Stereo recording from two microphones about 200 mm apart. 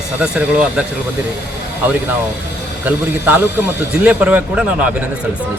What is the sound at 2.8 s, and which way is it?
A man's voice, 10° right (ahead or behind).